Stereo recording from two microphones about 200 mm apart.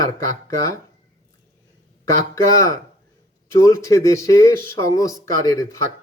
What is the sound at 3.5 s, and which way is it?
Speech, 15° left (ahead or behind).